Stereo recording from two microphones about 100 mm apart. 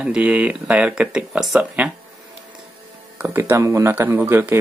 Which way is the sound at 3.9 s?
20° right (ahead or behind).